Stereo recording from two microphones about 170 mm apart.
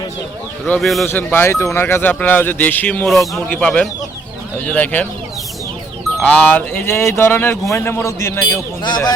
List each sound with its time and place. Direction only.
0.6 s a man's voice: centre (ahead or behind)
1.0 s speech: 10° left (ahead or behind)
6.5 s speech: 15° left (ahead or behind)